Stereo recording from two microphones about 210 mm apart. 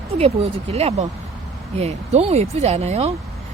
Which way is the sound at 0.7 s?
30° right (ahead or behind).